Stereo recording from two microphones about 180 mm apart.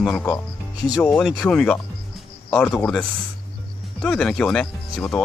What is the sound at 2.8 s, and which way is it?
Speech, 5° left (ahead or behind).